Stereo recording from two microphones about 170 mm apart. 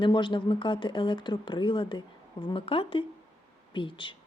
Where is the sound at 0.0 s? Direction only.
30° left (ahead or behind).